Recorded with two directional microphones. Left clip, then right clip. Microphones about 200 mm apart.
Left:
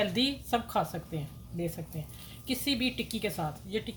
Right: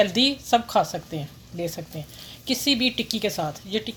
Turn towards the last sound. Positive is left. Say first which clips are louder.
# right 7 dB
turn(degrees=-45)  # may be behind; listen again after turning